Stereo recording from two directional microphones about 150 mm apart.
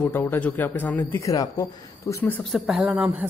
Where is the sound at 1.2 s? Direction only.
25° left (ahead or behind).